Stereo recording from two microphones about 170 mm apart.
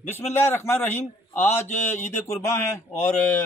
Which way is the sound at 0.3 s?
15° left (ahead or behind).